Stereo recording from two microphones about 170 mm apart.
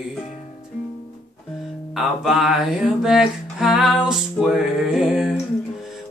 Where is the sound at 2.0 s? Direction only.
Centre (ahead or behind).